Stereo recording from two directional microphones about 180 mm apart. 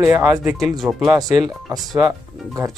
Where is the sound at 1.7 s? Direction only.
20° right (ahead or behind).